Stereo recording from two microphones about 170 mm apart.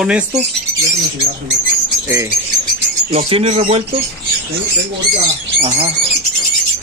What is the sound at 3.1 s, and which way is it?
Speech, 35° right (ahead or behind).